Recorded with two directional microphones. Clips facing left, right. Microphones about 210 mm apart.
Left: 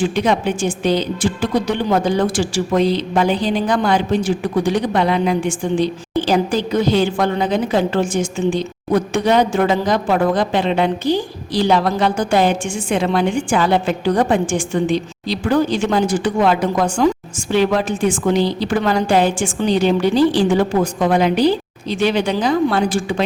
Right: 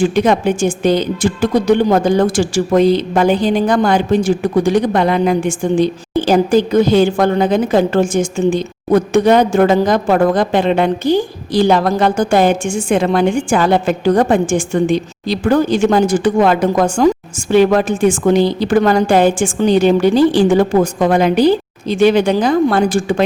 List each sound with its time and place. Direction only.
0.0 s a woman's voice: 50° right (ahead or behind)